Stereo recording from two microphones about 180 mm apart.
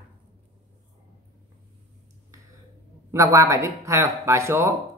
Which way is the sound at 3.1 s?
15° right (ahead or behind).